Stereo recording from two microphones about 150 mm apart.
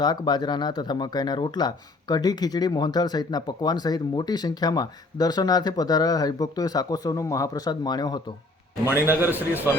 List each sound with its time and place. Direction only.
0.0 s speech: 30° left (ahead or behind)
9.0 s a man's voice: 15° right (ahead or behind)